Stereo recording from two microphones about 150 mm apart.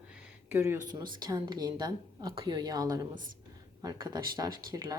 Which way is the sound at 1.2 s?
25° right (ahead or behind).